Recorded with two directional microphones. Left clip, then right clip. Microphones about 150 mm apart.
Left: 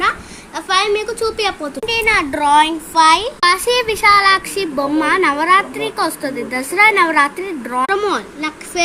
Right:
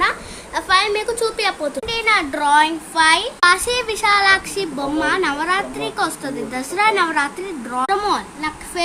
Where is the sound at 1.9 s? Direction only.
25° left (ahead or behind).